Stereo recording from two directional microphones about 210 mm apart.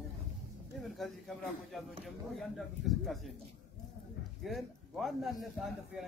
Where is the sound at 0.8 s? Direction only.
Centre (ahead or behind).